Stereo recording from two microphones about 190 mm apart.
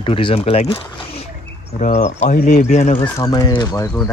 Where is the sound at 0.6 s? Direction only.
30° left (ahead or behind).